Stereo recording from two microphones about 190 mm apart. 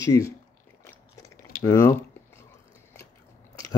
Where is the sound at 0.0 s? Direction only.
15° left (ahead or behind).